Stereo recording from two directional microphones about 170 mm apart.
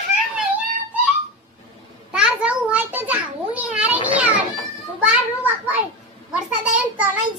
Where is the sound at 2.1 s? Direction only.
5° right (ahead or behind).